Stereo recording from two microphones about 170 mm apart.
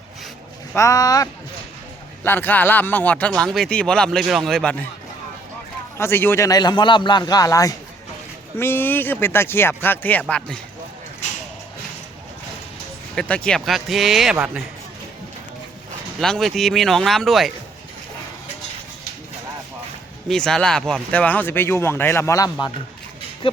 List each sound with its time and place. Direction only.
0.8 s a man's voice: 20° left (ahead or behind)
6.0 s a man's voice: 15° left (ahead or behind)
11.2 s shuffle: 45° left (ahead or behind)
13.1 s speech: 5° left (ahead or behind)
16.2 s speech: 5° left (ahead or behind)
20.2 s speech: 5° left (ahead or behind); by 22.7 s 20° left (ahead or behind)